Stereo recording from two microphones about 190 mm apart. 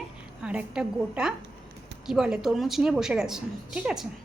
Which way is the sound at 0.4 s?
5° right (ahead or behind).